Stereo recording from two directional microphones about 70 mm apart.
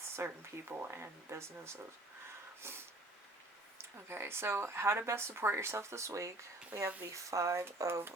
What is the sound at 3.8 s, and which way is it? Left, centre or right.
Speech, right.